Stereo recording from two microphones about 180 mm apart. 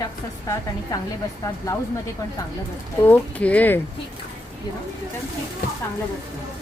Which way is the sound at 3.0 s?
10° left (ahead or behind).